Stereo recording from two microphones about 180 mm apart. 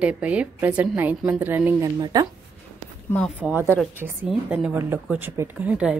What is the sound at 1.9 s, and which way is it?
Speech, 20° right (ahead or behind).